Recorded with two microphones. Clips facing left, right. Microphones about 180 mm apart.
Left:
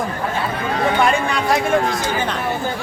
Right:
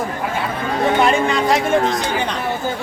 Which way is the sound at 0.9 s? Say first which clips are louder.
Right 2 dB; 20° right (ahead or behind).